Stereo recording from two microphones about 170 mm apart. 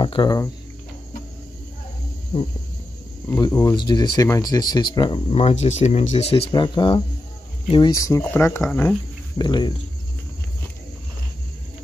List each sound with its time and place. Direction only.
0.0 s speech: 30° left (ahead or behind)
3.3 s speech: 20° left (ahead or behind)
9.4 s speech: 25° left (ahead or behind)